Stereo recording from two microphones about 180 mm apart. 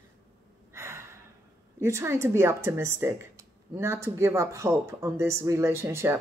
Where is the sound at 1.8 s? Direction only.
15° right (ahead or behind).